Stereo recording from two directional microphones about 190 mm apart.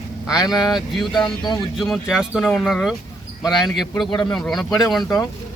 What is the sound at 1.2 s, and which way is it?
Speech, 20° left (ahead or behind).